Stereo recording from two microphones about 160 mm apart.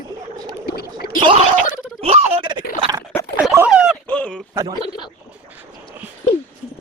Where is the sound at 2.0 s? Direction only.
40° right (ahead or behind).